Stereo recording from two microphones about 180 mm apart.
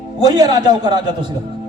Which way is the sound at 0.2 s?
20° right (ahead or behind).